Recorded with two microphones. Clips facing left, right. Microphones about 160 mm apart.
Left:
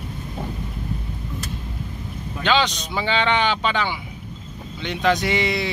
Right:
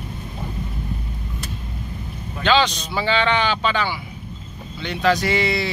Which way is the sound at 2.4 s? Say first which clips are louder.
Right 2 dB; 15° left (ahead or behind).